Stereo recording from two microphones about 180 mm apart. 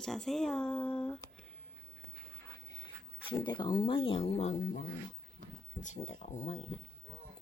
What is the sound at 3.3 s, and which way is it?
Speech, 25° left (ahead or behind).